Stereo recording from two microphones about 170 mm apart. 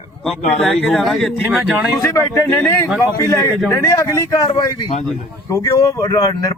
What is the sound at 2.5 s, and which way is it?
Speech, centre (ahead or behind).